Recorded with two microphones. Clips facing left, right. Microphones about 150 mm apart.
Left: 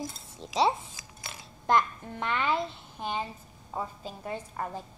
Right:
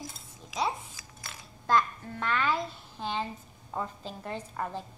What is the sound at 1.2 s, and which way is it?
A child's voice, 20° left (ahead or behind).